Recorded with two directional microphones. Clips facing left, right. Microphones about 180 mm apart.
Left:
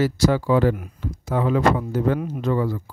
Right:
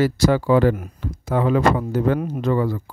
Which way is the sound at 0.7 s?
45° right (ahead or behind).